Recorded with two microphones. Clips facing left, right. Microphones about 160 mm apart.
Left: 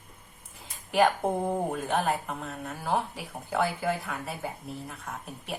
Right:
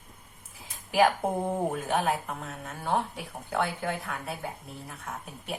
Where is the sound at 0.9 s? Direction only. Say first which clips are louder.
Even; centre (ahead or behind).